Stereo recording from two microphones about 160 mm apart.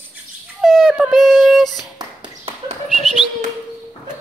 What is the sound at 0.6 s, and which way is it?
Yodeling, centre (ahead or behind).